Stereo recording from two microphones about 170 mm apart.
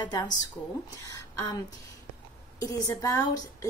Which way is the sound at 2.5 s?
20° left (ahead or behind).